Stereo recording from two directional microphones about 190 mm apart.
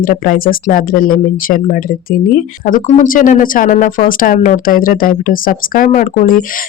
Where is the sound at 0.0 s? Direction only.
50° left (ahead or behind).